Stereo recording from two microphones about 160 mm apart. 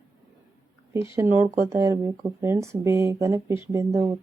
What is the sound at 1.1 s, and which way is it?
A woman's voice, 15° right (ahead or behind).